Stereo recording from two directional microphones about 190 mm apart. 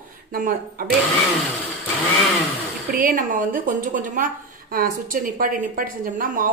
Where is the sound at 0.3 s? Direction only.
45° right (ahead or behind).